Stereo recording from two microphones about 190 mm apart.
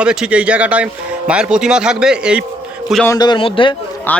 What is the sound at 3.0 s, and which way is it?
Speech, 20° left (ahead or behind).